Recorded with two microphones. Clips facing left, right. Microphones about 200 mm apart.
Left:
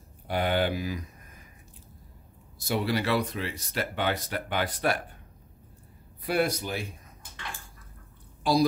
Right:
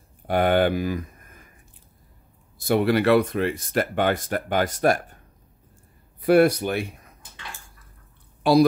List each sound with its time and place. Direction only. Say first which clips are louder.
0.3 s speech: right 7 dB; 55° right (ahead or behind)
2.6 s speech: right 8 dB; 55° right (ahead or behind)
6.2 s speech: right 10 dB; 60° right (ahead or behind)
8.5 s speech: right 7 dB; 65° right (ahead or behind)